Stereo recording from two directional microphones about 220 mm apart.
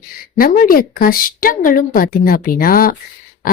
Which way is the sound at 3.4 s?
40° left (ahead or behind).